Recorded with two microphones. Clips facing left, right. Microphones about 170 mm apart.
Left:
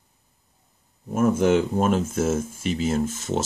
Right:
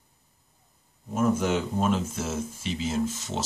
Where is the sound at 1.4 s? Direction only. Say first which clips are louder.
Left 6 dB; 55° left (ahead or behind).